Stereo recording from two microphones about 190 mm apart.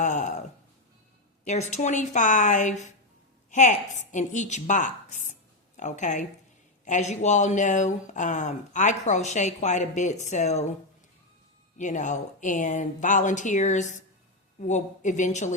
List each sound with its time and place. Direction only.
0.0 s a sound: 40° left (ahead or behind)
1.5 s a woman's voice: 40° left (ahead or behind)
11.8 s speech: 40° left (ahead or behind)